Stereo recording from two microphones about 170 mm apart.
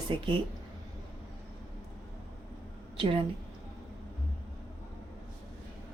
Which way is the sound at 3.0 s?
30° right (ahead or behind).